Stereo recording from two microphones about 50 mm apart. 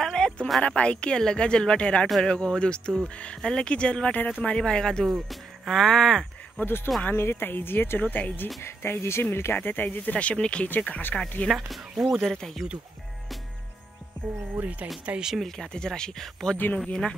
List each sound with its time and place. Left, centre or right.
0.0 s a sound: centre
0.6 s speech: left
5.1 s speech: centre
6.6 s speech: left
8.0 s speech: left
8.5 s speech: left
9.6 s speech: left
10.8 s speech: left
11.4 s speech: centre
12.3 s speech: centre
14.5 s speech: right
15.3 s speech: centre